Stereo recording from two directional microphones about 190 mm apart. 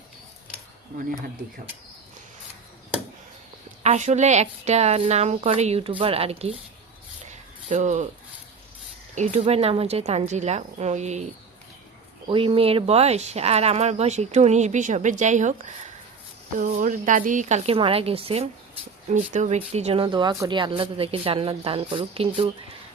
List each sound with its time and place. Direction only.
3.8 s speech: 40° right (ahead or behind)
7.7 s speech: 40° right (ahead or behind)
9.1 s speech: 40° right (ahead or behind)
12.3 s speech: 30° right (ahead or behind)